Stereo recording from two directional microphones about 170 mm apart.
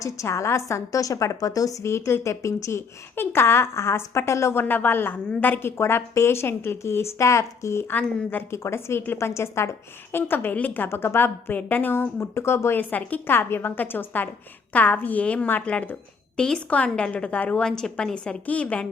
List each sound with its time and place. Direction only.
0.0 s a woman's voice: 20° left (ahead or behind)